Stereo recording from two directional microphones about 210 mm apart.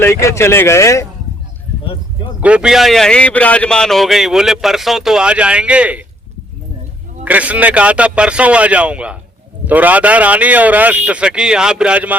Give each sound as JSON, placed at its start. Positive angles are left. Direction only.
{"t": 0.0, "sound": "speech", "side_deg": 15}
{"t": 2.4, "sound": "a man's voice", "side_deg": -5}
{"t": 7.3, "sound": "a man's voice", "side_deg": -5}